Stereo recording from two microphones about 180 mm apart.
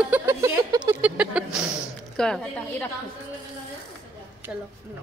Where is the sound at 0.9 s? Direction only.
10° right (ahead or behind).